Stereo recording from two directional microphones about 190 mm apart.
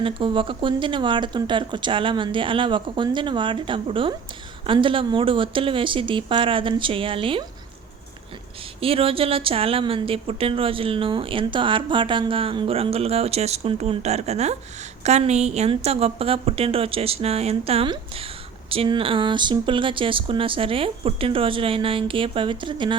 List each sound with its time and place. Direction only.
0.0 s a woman's voice: 25° right (ahead or behind)
8.8 s a woman's voice: 30° right (ahead or behind)